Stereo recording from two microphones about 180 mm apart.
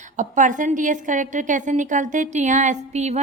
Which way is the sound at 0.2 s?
45° right (ahead or behind).